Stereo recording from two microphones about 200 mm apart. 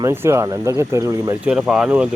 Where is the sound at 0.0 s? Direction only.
10° right (ahead or behind).